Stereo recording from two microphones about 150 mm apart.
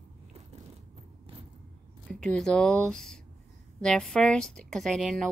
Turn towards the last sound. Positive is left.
turn(degrees=0)  # may be behind; listen again after turning